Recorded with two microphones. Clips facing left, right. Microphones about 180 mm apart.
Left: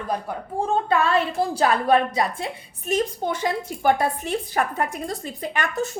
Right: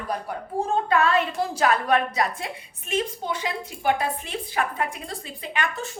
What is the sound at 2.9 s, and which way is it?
A woman's voice, 45° left (ahead or behind).